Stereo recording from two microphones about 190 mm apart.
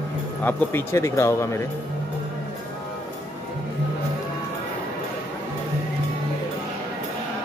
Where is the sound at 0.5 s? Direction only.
15° left (ahead or behind).